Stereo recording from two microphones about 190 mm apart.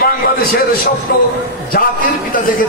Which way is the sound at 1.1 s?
50° left (ahead or behind).